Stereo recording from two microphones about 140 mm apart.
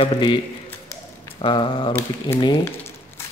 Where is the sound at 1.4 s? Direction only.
35° left (ahead or behind).